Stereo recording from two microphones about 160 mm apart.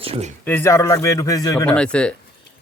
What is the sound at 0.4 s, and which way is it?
A man's voice, 15° left (ahead or behind).